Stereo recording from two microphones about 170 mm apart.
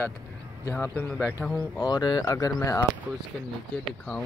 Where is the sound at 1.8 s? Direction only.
25° left (ahead or behind).